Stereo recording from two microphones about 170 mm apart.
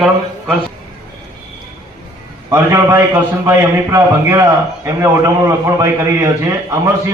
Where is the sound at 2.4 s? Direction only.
15° right (ahead or behind).